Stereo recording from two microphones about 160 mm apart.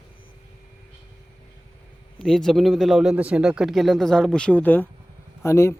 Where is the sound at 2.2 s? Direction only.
Centre (ahead or behind); by 5.7 s 15° left (ahead or behind).